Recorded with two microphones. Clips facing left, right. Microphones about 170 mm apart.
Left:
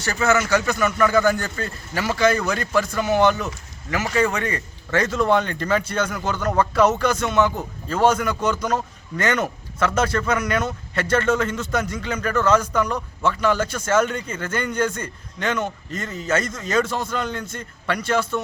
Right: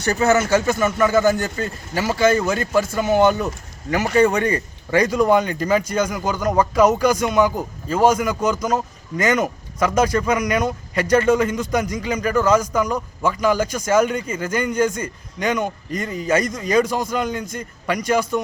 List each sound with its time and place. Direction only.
0.1 s a man's voice: 35° right (ahead or behind)
0.5 s a man's voice: 25° right (ahead or behind)
3.0 s speech: 10° right (ahead or behind)
3.3 s a man's voice: 35° right (ahead or behind)
4.9 s speech: 15° right (ahead or behind)